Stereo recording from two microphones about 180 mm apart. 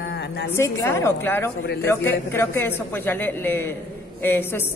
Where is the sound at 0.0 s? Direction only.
65° left (ahead or behind).